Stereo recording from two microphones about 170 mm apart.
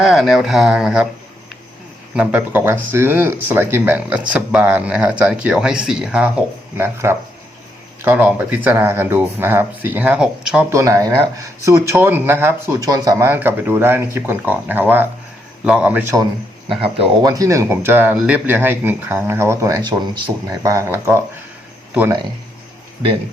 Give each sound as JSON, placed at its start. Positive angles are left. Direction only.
{"t": 0.0, "sound": "speech", "side_deg": 0}
{"t": 2.1, "sound": "speech", "side_deg": -5}
{"t": 10.7, "sound": "speech", "side_deg": -15}
{"t": 16.8, "sound": "speech", "side_deg": -35}
{"t": 17.2, "sound": "speech", "side_deg": -20}